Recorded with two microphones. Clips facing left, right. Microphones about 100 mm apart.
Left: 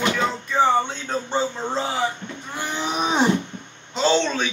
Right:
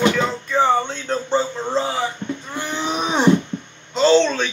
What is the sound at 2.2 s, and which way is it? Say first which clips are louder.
Livestock: right 8 dB; 45° right (ahead or behind).